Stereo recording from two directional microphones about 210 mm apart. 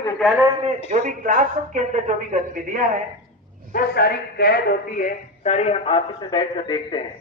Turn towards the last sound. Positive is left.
turn(degrees=25)  # may be behind; listen again after turning